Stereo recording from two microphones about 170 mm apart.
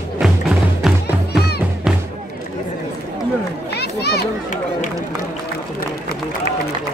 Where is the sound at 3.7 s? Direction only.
75° left (ahead or behind).